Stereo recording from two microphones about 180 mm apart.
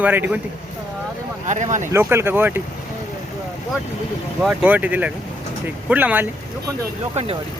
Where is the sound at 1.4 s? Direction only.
40° right (ahead or behind).